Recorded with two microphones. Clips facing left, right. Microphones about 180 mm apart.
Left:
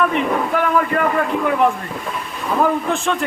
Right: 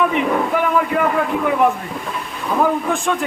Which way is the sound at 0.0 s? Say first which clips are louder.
Right 1 dB; 15° right (ahead or behind).